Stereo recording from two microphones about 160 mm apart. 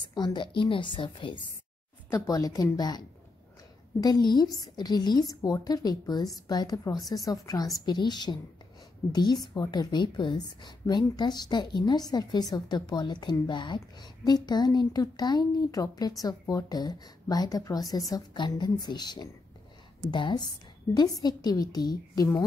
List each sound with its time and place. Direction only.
0.1 s a woman's voice: 30° left (ahead or behind)
2.0 s a woman's voice: 20° left (ahead or behind)